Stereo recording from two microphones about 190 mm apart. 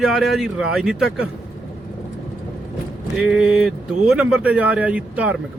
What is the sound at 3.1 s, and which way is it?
Speech, 5° right (ahead or behind).